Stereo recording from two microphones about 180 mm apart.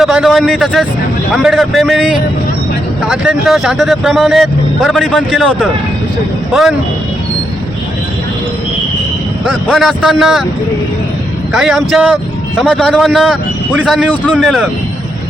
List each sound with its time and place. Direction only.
0.0 s speech: centre (ahead or behind)
9.5 s speech: centre (ahead or behind)
11.5 s speech: centre (ahead or behind)